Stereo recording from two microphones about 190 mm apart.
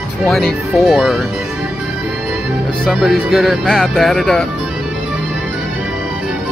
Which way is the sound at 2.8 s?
Centre (ahead or behind).